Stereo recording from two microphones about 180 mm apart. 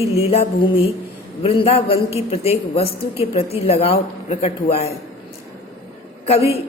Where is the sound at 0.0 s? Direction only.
30° left (ahead or behind).